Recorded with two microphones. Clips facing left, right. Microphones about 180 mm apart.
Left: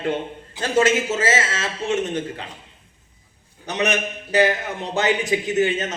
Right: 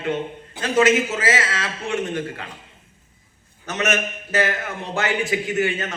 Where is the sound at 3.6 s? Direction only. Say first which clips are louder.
Left 1 dB; 15° left (ahead or behind).